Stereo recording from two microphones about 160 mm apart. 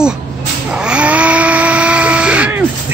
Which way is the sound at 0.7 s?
5° right (ahead or behind).